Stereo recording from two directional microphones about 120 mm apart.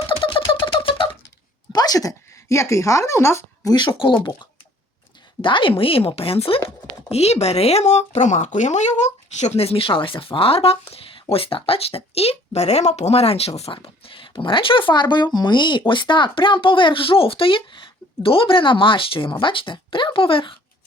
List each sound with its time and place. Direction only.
0.1 s a sound: 45° left (ahead or behind)
1.7 s a woman's voice: 30° left (ahead or behind); by 6.6 s 50° left (ahead or behind)
7.1 s speech: 60° left (ahead or behind)
9.6 s speech: 55° left (ahead or behind)